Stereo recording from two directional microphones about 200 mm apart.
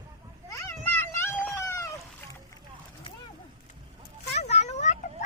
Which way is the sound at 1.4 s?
10° left (ahead or behind).